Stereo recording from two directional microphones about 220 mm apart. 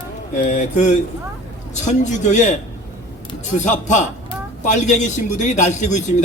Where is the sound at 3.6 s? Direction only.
35° left (ahead or behind).